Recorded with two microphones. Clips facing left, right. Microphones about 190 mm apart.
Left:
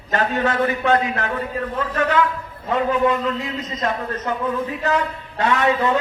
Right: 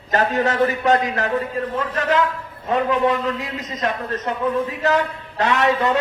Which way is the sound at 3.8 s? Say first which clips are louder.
Right 1 dB; 35° left (ahead or behind).